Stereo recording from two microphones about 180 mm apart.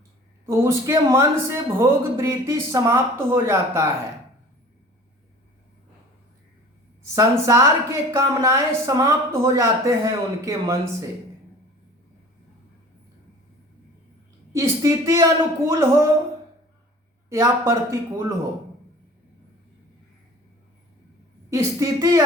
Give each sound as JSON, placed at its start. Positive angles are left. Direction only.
{"t": 0.4, "sound": "a woman's voice", "side_deg": -15}
{"t": 7.2, "sound": "a woman's voice", "side_deg": -15}
{"t": 14.5, "sound": "a woman's voice", "side_deg": -15}
{"t": 17.2, "sound": "a woman's voice", "side_deg": -15}
{"t": 21.5, "sound": "a woman's voice", "side_deg": -15}